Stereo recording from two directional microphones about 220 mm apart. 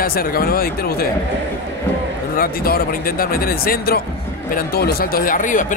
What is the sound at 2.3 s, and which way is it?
A man's voice, 40° left (ahead or behind).